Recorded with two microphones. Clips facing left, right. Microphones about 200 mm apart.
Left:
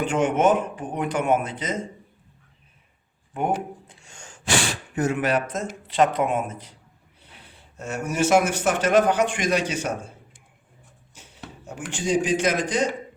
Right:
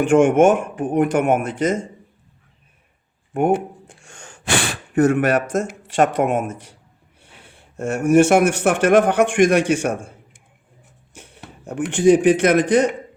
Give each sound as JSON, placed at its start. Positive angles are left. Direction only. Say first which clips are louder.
{"t": 0.1, "sound": "speech", "louder": "right 8 dB", "side_deg": -50}
{"t": 4.0, "sound": "speech", "louder": "right 2 dB", "side_deg": -60}
{"t": 7.8, "sound": "speech", "louder": "right 11 dB", "side_deg": -55}
{"t": 11.6, "sound": "speech", "louder": "right 14 dB", "side_deg": -60}